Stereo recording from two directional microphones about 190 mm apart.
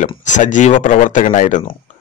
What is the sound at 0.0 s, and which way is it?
A man's voice, 40° left (ahead or behind).